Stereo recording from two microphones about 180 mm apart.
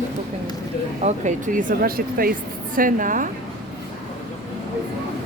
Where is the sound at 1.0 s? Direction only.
45° right (ahead or behind).